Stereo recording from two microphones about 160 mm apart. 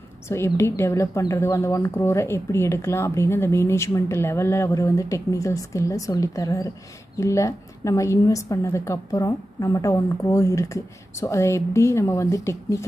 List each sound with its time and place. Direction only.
0.3 s a woman's voice: 15° left (ahead or behind)